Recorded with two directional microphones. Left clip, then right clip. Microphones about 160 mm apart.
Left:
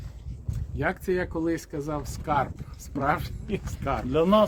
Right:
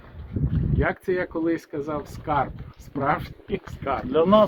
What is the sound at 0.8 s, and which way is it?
Speech, 30° left (ahead or behind).